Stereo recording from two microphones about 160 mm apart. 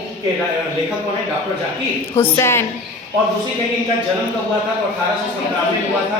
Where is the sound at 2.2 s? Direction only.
15° left (ahead or behind).